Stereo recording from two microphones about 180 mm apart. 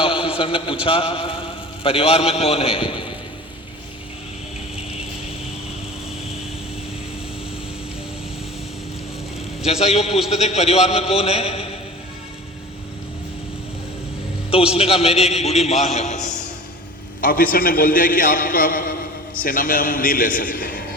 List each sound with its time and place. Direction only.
0.0 s a sound: 30° left (ahead or behind)
0.9 s a man's voice: 30° left (ahead or behind)
9.6 s a man's voice: 35° left (ahead or behind)
14.5 s a man's voice: 35° left (ahead or behind)
17.2 s a man's voice: 50° left (ahead or behind)